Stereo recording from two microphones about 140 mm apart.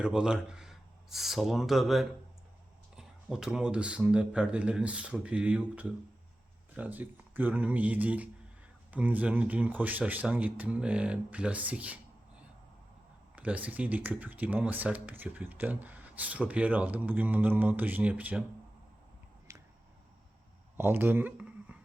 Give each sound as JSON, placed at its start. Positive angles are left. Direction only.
{"t": 0.0, "sound": "speech", "side_deg": -5}
{"t": 13.3, "sound": "speech", "side_deg": -10}
{"t": 19.5, "sound": "finger snapping", "side_deg": -20}
{"t": 20.7, "sound": "speech", "side_deg": -15}